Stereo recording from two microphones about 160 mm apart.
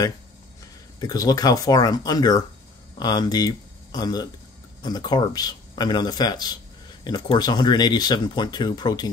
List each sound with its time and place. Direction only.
0.9 s speech: 25° left (ahead or behind)